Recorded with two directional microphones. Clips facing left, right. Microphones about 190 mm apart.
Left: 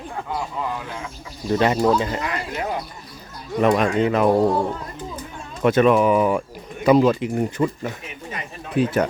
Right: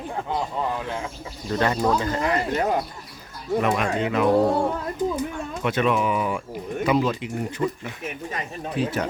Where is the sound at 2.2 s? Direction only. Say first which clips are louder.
Right 4 dB; 35° right (ahead or behind).